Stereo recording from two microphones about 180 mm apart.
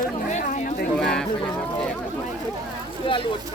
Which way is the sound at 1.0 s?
5° left (ahead or behind).